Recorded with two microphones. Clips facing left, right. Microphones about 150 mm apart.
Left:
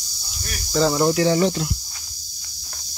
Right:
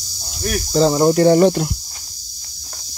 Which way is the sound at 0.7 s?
30° right (ahead or behind).